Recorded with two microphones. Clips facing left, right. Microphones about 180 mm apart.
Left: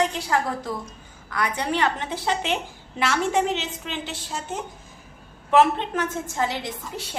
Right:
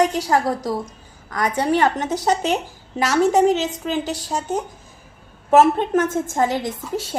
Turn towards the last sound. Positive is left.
turn(degrees=-45)  # may be behind; listen again after turning